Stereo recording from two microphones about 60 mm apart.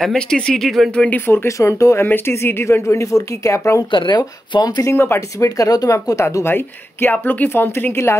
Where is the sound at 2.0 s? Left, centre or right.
Left.